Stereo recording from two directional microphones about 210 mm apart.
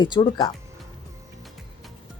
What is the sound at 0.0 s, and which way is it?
Speech, 20° left (ahead or behind).